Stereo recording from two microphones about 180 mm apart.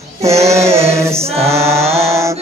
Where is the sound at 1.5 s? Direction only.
15° right (ahead or behind).